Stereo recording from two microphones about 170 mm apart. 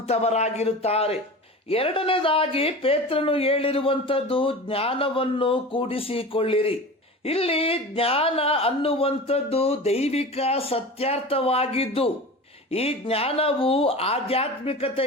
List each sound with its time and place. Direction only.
0.1 s speech: 40° left (ahead or behind)